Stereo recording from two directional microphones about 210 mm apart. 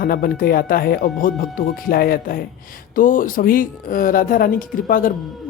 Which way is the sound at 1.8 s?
45° left (ahead or behind).